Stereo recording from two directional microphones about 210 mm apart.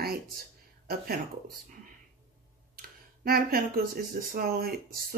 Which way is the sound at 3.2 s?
45° right (ahead or behind).